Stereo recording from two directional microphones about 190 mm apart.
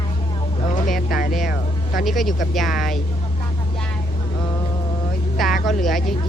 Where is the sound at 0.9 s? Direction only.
45° left (ahead or behind).